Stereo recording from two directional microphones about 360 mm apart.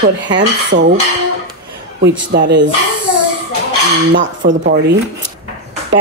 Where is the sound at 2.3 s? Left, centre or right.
Right.